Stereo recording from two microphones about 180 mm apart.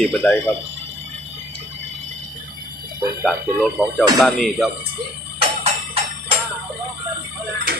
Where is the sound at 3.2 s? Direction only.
Centre (ahead or behind).